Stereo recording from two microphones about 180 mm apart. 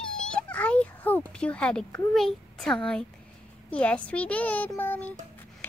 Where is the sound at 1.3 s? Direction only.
5° left (ahead or behind).